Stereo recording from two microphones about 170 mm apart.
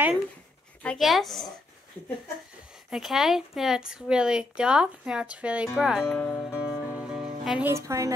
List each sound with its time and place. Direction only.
0.8 s speech: centre (ahead or behind)
2.9 s speech: centre (ahead or behind)
6.5 s music: 5° right (ahead or behind)
7.7 s a woman's voice: 20° right (ahead or behind)